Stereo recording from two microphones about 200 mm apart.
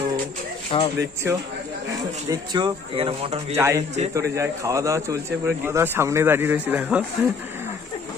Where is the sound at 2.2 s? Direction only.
20° right (ahead or behind).